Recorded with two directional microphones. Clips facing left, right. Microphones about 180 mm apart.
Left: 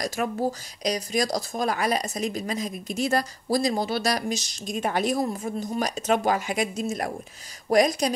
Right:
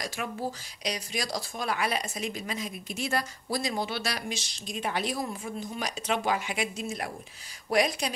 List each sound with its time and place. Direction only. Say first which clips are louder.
0.0 s a woman's voice: left 7 dB; 40° left (ahead or behind)